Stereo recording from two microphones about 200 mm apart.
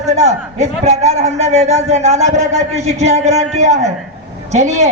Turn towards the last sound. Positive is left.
turn(degrees=-35)  # may be behind; listen again after turning